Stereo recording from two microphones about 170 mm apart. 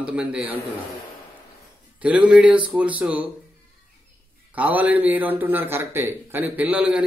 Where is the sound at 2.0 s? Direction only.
10° right (ahead or behind).